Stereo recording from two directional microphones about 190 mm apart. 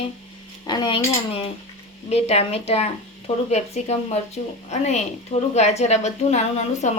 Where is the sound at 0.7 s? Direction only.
25° left (ahead or behind).